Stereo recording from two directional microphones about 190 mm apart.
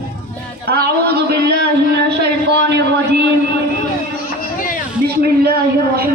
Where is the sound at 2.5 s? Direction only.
65° right (ahead or behind).